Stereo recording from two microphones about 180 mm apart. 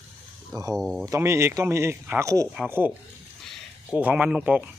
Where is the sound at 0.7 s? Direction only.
Centre (ahead or behind).